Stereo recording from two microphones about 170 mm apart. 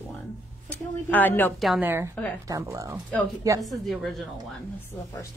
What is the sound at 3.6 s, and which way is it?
Speech, centre (ahead or behind).